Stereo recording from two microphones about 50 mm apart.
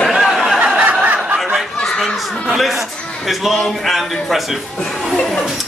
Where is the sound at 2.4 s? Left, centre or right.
Centre.